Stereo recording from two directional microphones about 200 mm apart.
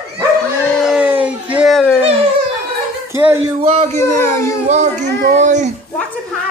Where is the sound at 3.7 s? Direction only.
35° right (ahead or behind).